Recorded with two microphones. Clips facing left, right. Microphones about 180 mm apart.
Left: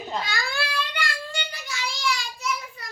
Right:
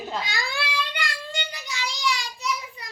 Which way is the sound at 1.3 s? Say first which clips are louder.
Right 1 dB; 20° right (ahead or behind).